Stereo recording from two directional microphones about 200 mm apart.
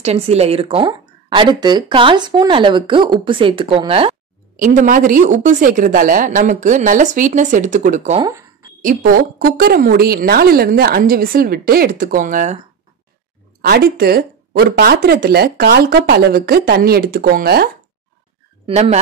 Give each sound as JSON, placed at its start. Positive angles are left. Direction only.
{"t": 0.0, "sound": "speech", "side_deg": -30}
{"t": 4.6, "sound": "speech", "side_deg": -40}
{"t": 8.2, "sound": "speech", "side_deg": -15}
{"t": 8.8, "sound": "speech", "side_deg": -45}
{"t": 13.6, "sound": "speech", "side_deg": -55}
{"t": 18.7, "sound": "speech", "side_deg": -30}